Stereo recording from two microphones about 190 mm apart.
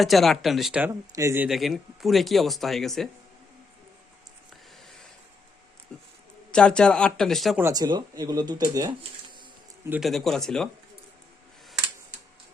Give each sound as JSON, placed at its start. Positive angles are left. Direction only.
{"t": 0.0, "sound": "speech", "side_deg": 0}
{"t": 1.1, "sound": "a man's voice", "side_deg": -15}
{"t": 1.5, "sound": "speech", "side_deg": 0}
{"t": 5.9, "sound": "a sound", "side_deg": 5}
{"t": 6.5, "sound": "speech", "side_deg": 5}
{"t": 7.6, "sound": "speech", "side_deg": -20}
{"t": 9.9, "sound": "speech", "side_deg": 0}